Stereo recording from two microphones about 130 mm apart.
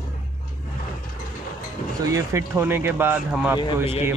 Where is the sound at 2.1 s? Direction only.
25° right (ahead or behind).